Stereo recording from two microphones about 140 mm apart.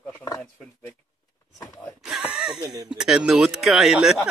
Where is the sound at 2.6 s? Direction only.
30° right (ahead or behind).